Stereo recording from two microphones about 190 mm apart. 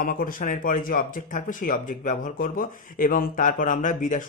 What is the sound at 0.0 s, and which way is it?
Speech, 45° left (ahead or behind).